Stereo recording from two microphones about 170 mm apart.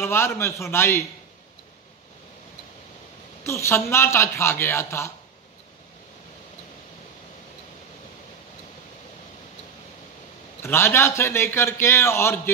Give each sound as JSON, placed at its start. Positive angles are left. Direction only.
{"t": 0.0, "sound": "a man's voice", "side_deg": 15}
{"t": 3.4, "sound": "a man's voice", "side_deg": 15}
{"t": 10.6, "sound": "a man's voice", "side_deg": 15}